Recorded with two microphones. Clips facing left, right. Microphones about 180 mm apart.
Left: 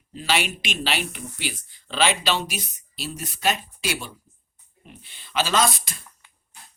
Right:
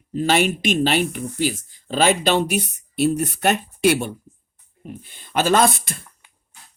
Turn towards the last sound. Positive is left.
turn(degrees=-55)  # may be behind; listen again after turning